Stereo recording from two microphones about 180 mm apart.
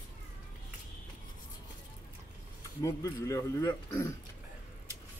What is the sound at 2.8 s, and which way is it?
Speech, 20° left (ahead or behind).